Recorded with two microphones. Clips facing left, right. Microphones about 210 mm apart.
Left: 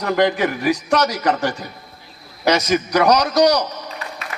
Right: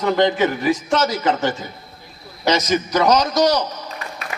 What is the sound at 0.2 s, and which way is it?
A man's voice, 25° right (ahead or behind).